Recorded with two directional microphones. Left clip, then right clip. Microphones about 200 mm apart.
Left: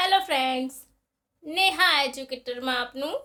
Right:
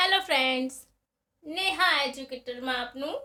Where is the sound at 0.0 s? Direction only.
15° left (ahead or behind).